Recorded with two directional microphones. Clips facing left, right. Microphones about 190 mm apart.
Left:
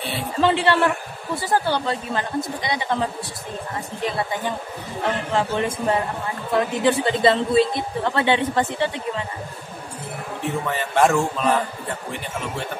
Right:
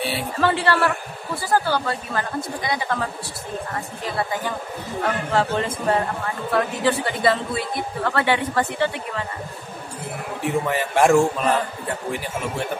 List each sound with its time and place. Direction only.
0.4 s a woman's voice: 20° left (ahead or behind)
5.0 s a man's voice: 15° left (ahead or behind)
10.7 s a man's voice: 10° right (ahead or behind)